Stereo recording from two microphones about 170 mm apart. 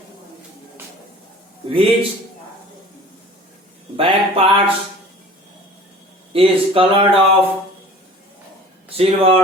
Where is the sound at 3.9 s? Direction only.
35° right (ahead or behind).